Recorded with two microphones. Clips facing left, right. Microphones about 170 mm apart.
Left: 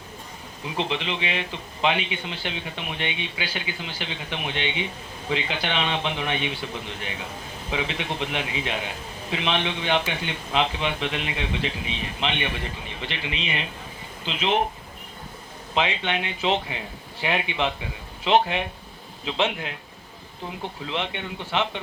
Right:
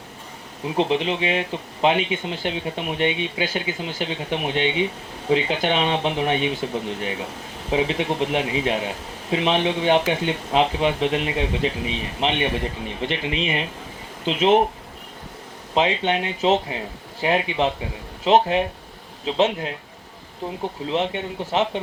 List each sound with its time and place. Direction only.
0.8 s speech: 45° right (ahead or behind)
15.7 s speech: 40° right (ahead or behind)
20.8 s speech: 40° right (ahead or behind)